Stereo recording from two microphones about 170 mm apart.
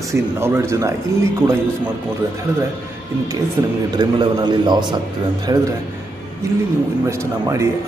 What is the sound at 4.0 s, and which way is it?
Speech, 25° right (ahead or behind).